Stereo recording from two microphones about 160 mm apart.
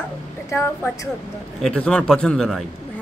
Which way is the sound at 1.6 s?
5° left (ahead or behind).